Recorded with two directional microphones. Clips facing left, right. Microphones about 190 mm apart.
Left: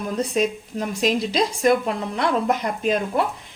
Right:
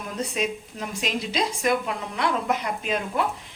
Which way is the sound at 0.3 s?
40° left (ahead or behind).